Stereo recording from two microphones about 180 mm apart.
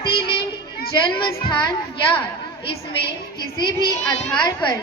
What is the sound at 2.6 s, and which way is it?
Speech, 30° left (ahead or behind).